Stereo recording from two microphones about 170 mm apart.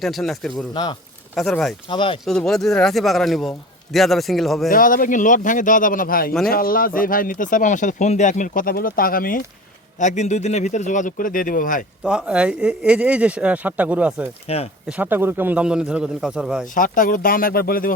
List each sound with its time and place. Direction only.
0.0 s a man's voice: centre (ahead or behind)
0.7 s speech: 25° left (ahead or behind)
1.4 s a man's voice: 5° left (ahead or behind)
1.9 s speech: 30° left (ahead or behind)
2.2 s a man's voice: 5° left (ahead or behind)
4.7 s speech: 55° left (ahead or behind)
10.0 s speech: 45° left (ahead or behind)
12.0 s speech: 5° right (ahead or behind)
14.4 s speech: 35° left (ahead or behind)
14.8 s a man's voice: 10° right (ahead or behind)
16.7 s speech: 55° left (ahead or behind)